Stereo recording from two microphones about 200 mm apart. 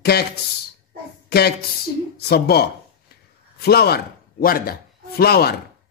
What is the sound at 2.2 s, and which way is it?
A man's voice, 50° left (ahead or behind).